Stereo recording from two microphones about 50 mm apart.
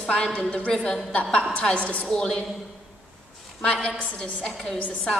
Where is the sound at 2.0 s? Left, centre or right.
Centre.